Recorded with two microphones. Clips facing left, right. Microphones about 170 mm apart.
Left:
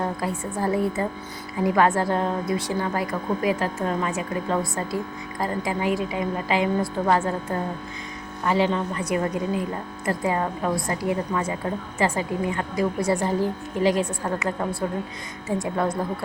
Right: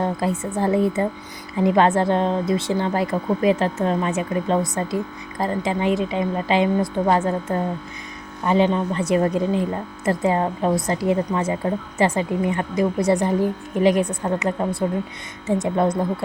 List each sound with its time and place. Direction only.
0.0 s a woman's voice: 20° right (ahead or behind)